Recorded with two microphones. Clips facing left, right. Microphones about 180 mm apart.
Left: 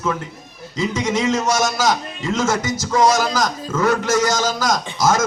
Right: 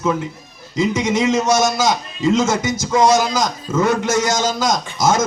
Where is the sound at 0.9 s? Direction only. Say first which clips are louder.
Even; 10° right (ahead or behind).